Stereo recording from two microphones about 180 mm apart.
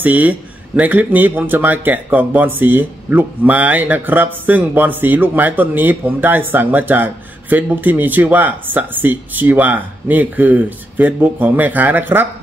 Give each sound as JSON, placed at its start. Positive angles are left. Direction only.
{"t": 0.0, "sound": "speech", "side_deg": -10}